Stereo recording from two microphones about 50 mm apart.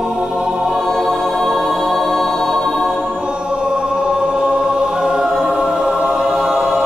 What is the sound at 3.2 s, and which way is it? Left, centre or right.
Choir, centre.